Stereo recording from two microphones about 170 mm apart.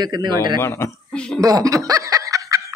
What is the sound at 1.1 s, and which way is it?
Speech, 5° left (ahead or behind).